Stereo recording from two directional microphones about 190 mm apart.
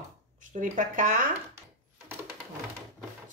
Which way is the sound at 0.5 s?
40° right (ahead or behind).